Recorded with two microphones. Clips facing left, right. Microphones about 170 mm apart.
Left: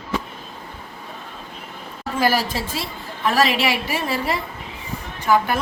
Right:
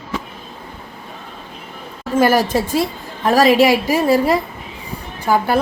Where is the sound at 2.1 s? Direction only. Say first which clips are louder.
Right 7 dB; 50° right (ahead or behind).